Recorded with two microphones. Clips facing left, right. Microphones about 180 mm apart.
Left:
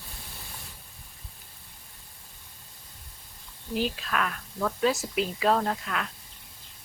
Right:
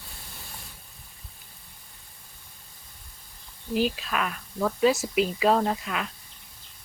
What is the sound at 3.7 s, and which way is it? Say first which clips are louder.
Speech: right 3 dB; 5° right (ahead or behind).